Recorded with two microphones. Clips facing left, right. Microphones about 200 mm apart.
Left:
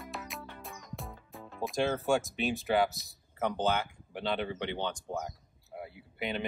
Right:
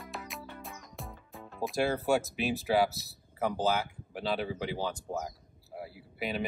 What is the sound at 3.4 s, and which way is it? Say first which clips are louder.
Speech: right 1 dB; 5° right (ahead or behind).